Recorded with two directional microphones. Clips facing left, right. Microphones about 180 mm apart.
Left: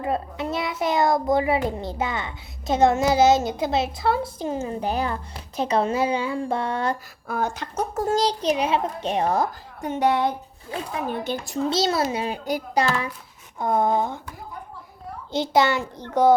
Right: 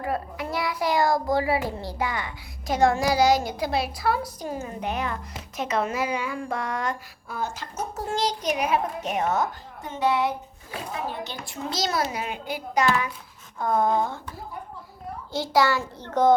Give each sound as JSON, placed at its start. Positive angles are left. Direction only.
{"t": 0.0, "sound": "a child's voice", "side_deg": 25}
{"t": 7.3, "sound": "speech", "side_deg": 55}
{"t": 8.0, "sound": "a child's voice", "side_deg": 35}
{"t": 11.1, "sound": "a woman's voice", "side_deg": 55}
{"t": 11.5, "sound": "a child's voice", "side_deg": 30}
{"t": 13.6, "sound": "a child's voice", "side_deg": 20}
{"t": 15.3, "sound": "a child's voice", "side_deg": 20}